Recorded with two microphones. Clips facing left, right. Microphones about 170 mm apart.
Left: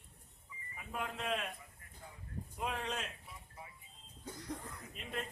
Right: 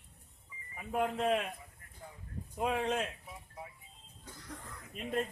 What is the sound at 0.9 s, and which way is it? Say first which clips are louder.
Speech: right 9 dB; 50° right (ahead or behind).